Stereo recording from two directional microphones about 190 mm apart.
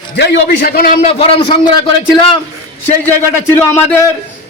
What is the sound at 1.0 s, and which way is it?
A man's voice, 30° left (ahead or behind).